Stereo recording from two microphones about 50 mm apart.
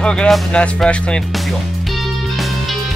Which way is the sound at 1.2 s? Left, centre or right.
Centre.